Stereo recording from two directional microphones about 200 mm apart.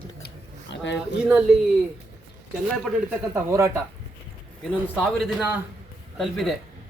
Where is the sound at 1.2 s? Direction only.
5° right (ahead or behind).